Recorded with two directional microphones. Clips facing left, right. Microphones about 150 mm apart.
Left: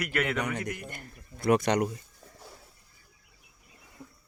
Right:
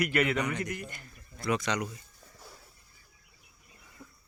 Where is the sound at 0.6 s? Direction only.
55° left (ahead or behind).